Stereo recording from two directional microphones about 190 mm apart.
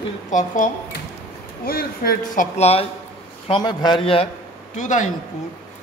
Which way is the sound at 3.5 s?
25° left (ahead or behind).